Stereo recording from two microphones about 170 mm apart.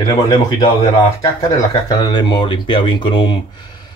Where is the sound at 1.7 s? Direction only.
25° left (ahead or behind).